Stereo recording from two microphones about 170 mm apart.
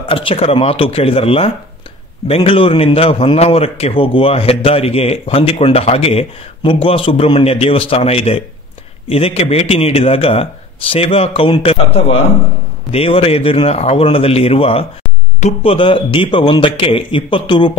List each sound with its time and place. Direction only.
0.1 s a man's voice: 35° left (ahead or behind)